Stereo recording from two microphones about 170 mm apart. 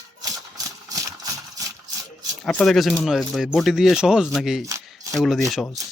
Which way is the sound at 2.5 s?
5° left (ahead or behind).